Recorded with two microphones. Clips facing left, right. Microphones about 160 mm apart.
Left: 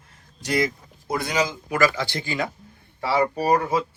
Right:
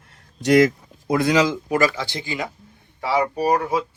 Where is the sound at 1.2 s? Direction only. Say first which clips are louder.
Right 7 dB; 90° right.